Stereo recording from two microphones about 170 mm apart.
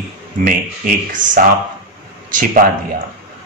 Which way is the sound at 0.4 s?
50° right (ahead or behind).